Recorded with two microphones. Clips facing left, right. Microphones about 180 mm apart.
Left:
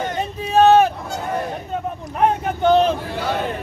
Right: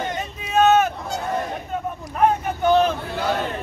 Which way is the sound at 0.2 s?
30° left (ahead or behind).